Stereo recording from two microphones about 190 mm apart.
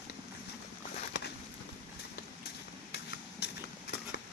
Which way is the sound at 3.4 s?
60° left (ahead or behind).